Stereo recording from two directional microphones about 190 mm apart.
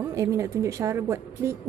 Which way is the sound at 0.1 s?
15° right (ahead or behind).